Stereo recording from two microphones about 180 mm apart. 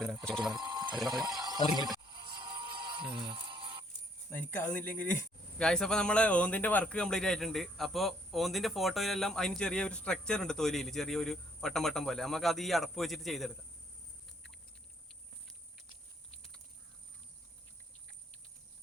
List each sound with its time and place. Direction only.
0.0 s speech: centre (ahead or behind)
0.5 s a sound: 25° right (ahead or behind)
1.0 s speech: 20° right (ahead or behind)
2.0 s music: 25° right (ahead or behind)
4.3 s speech: 10° left (ahead or behind)